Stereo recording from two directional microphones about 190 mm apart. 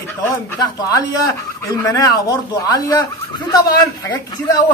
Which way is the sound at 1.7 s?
20° left (ahead or behind).